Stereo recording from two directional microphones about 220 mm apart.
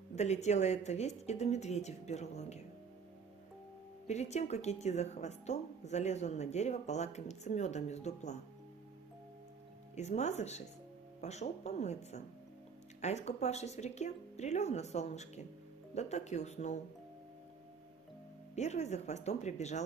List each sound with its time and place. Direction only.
0.1 s speech: 30° left (ahead or behind)
4.1 s speech: 30° left (ahead or behind)
9.9 s speech: 30° left (ahead or behind)
18.5 s speech: 30° left (ahead or behind)